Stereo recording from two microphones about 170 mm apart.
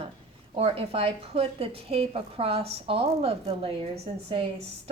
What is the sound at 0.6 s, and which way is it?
A woman's voice, 35° right (ahead or behind).